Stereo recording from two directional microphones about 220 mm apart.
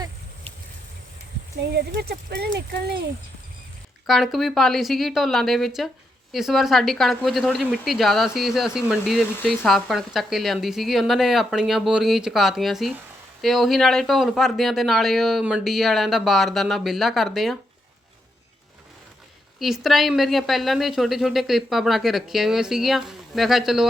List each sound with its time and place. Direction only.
1.7 s speech: 50° right (ahead or behind)
4.0 s a woman's voice: centre (ahead or behind)
19.5 s a woman's voice: centre (ahead or behind)